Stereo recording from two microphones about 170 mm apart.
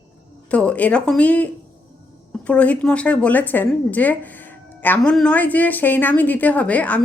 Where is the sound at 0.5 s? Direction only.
5° left (ahead or behind).